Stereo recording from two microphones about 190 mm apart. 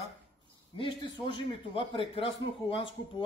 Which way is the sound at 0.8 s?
25° left (ahead or behind).